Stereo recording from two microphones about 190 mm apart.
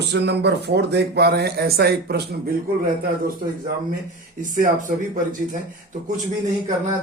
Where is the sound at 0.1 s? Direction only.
65° right (ahead or behind).